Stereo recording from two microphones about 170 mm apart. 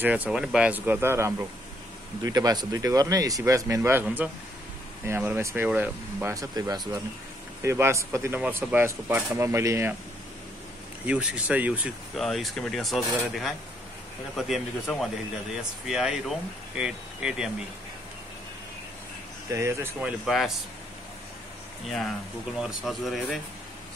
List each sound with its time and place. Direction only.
0.0 s speech: 10° right (ahead or behind)
11.1 s speech: 10° right (ahead or behind)
19.5 s speech: 15° right (ahead or behind)
22.6 s speech: centre (ahead or behind)